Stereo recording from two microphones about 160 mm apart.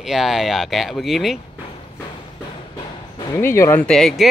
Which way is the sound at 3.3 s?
15° left (ahead or behind).